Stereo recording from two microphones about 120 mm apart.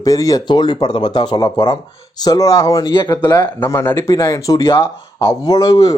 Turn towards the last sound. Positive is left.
turn(degrees=30)  # may be behind; listen again after turning